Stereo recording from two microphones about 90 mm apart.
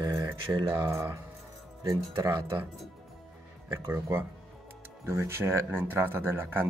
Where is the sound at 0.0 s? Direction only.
45° right (ahead or behind).